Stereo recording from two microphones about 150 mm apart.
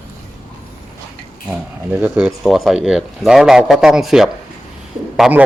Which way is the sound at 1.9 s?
10° right (ahead or behind).